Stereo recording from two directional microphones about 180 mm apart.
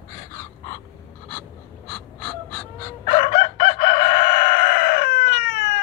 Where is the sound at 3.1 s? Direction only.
45° left (ahead or behind).